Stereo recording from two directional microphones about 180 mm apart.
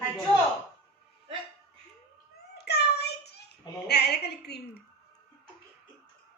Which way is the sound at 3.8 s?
65° left (ahead or behind).